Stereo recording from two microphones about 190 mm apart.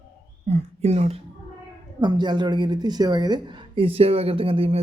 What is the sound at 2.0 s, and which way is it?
A woman's voice, 20° right (ahead or behind).